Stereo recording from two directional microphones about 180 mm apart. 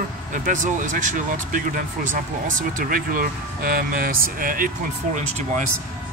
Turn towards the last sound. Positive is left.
turn(degrees=-40)  # may be behind; listen again after turning